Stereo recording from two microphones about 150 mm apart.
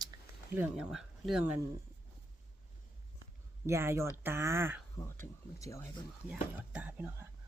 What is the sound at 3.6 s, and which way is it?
Speech, 15° right (ahead or behind).